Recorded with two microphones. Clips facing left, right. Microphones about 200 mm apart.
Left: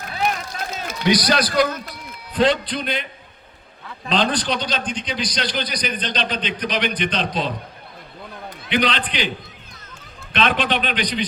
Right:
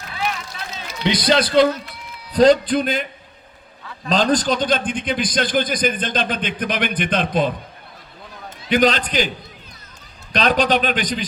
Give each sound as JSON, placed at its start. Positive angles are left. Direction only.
{"t": 0.1, "sound": "run", "side_deg": 45}
{"t": 1.0, "sound": "a man's voice", "side_deg": -25}
{"t": 2.3, "sound": "a man's voice", "side_deg": -40}
{"t": 4.1, "sound": "a man's voice", "side_deg": -45}
{"t": 8.7, "sound": "a man's voice", "side_deg": -45}
{"t": 10.3, "sound": "a man's voice", "side_deg": -40}